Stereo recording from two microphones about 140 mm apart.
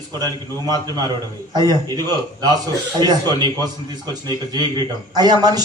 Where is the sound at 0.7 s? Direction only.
30° right (ahead or behind).